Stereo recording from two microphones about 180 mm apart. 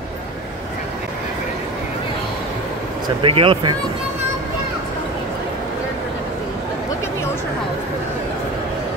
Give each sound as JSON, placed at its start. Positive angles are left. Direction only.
{"t": 3.2, "sound": "speech", "side_deg": -30}